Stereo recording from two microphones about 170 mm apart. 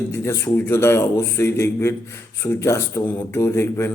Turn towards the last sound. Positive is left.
turn(degrees=15)  # may be behind; listen again after turning